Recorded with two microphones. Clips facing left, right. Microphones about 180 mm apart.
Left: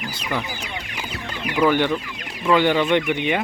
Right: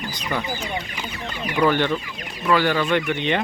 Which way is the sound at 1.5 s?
10° left (ahead or behind).